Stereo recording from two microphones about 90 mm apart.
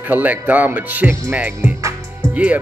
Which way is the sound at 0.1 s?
20° right (ahead or behind).